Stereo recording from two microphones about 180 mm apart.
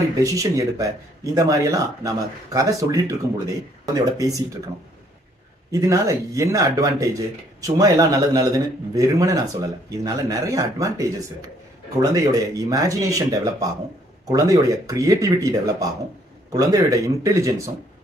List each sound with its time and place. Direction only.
0.2 s speech: 20° right (ahead or behind)
5.7 s speech: 15° right (ahead or behind)